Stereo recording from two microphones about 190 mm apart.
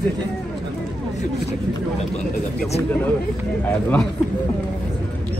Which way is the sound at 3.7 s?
10° left (ahead or behind).